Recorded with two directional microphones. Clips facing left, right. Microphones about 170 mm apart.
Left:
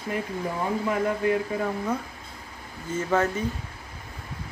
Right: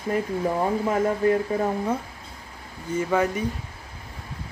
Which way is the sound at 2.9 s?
10° right (ahead or behind).